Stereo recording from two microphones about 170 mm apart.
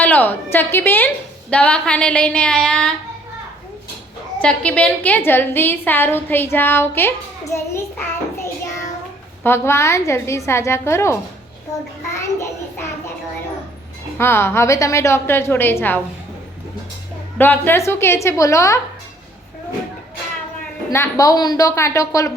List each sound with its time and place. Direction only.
0.0 s a woman's voice: 10° left (ahead or behind)
4.4 s a woman's voice: 5° left (ahead or behind)
9.4 s a woman's voice: 15° left (ahead or behind)
12.1 s child singing: 15° left (ahead or behind)
14.2 s a woman's voice: 15° left (ahead or behind)
17.3 s a woman's voice: 10° left (ahead or behind)
20.9 s speech: 15° left (ahead or behind)